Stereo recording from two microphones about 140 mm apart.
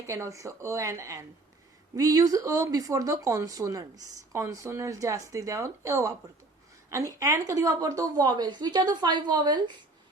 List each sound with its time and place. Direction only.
0.1 s speech: 20° right (ahead or behind)